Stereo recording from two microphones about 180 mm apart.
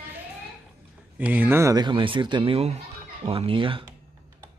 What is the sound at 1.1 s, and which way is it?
Speech, 10° right (ahead or behind).